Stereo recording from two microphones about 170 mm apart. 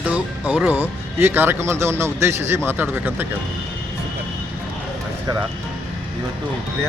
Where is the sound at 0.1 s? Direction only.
10° right (ahead or behind).